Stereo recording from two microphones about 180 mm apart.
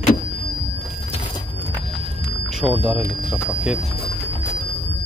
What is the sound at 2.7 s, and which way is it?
Speech, 10° right (ahead or behind).